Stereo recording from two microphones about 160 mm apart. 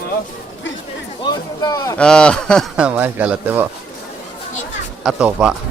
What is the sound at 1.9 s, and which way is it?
Speech, 5° left (ahead or behind).